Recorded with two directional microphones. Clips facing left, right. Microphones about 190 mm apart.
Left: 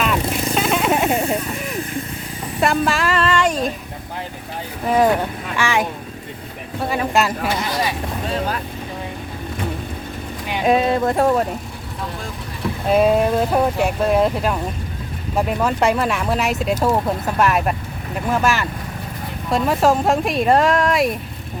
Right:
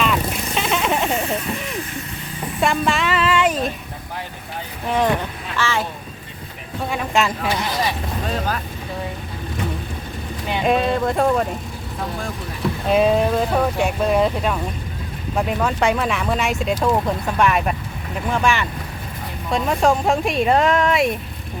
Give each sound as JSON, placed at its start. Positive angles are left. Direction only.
{"t": 0.0, "sound": "vehicle", "side_deg": 5}
{"t": 2.6, "sound": "music", "side_deg": 0}
{"t": 4.9, "sound": "speech", "side_deg": 5}
{"t": 5.5, "sound": "speech", "side_deg": 15}
{"t": 6.9, "sound": "speech", "side_deg": 0}
{"t": 10.5, "sound": "speech", "side_deg": 5}
{"t": 12.9, "sound": "speech", "side_deg": 5}